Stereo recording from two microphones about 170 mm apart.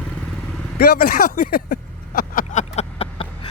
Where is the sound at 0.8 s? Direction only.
60° left (ahead or behind).